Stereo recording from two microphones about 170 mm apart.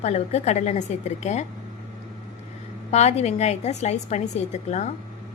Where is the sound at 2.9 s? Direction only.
40° left (ahead or behind).